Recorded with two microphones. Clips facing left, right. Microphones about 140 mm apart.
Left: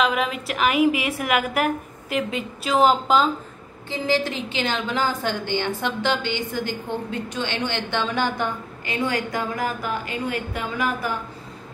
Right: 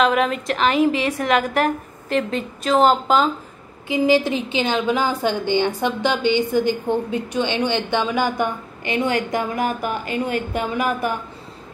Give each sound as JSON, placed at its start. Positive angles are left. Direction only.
{"t": 0.0, "sound": "a woman's voice", "side_deg": 5}
{"t": 3.9, "sound": "a woman's voice", "side_deg": -15}